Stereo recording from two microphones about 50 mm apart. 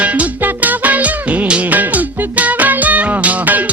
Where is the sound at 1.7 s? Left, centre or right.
Right.